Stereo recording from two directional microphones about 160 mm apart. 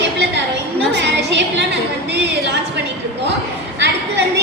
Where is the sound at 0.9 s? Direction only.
90° right.